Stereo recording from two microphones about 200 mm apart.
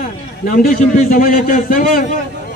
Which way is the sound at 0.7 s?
45° left (ahead or behind).